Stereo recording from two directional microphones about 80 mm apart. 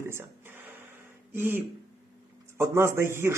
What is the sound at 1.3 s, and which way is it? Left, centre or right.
Speech, right.